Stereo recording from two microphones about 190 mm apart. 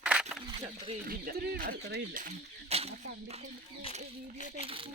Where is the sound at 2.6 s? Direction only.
35° right (ahead or behind).